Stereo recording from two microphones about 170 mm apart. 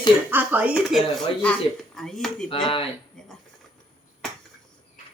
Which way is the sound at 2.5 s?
30° left (ahead or behind).